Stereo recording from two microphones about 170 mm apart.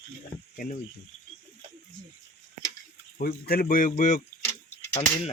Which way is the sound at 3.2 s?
60° left (ahead or behind).